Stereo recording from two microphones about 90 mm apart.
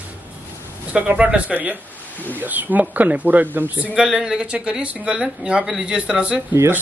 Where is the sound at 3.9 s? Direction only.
10° right (ahead or behind).